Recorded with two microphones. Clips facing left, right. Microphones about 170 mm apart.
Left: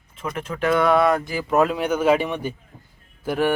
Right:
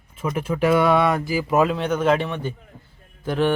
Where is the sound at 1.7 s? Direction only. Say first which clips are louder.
Left 1 dB; 10° left (ahead or behind).